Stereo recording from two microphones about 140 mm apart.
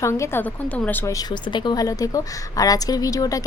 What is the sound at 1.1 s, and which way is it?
A woman's voice, 35° left (ahead or behind).